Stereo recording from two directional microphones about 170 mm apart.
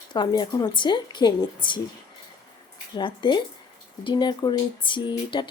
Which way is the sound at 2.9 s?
30° left (ahead or behind).